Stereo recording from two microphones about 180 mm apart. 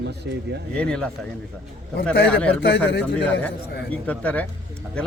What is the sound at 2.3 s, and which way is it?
Speech, 10° left (ahead or behind).